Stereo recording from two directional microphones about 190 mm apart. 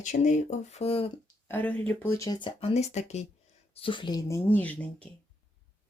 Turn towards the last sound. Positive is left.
turn(degrees=5)  # may be behind; listen again after turning